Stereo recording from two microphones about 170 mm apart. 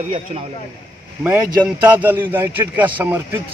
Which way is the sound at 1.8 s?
10° right (ahead or behind).